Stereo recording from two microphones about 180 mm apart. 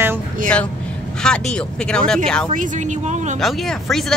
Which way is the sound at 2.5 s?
45° right (ahead or behind).